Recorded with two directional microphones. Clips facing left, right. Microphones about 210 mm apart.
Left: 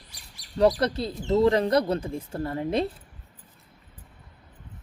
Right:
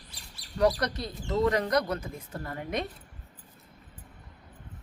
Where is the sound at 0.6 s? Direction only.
25° left (ahead or behind).